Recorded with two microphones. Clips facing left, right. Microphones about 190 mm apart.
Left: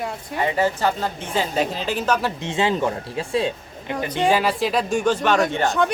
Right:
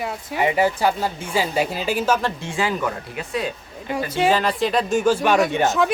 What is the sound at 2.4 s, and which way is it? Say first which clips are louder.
Speech: left 2 dB; 25° left (ahead or behind).